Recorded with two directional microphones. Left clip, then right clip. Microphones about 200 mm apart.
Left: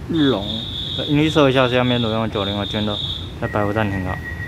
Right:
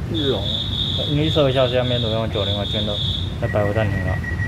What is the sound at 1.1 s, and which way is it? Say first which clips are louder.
Speech: left 3 dB; 30° left (ahead or behind).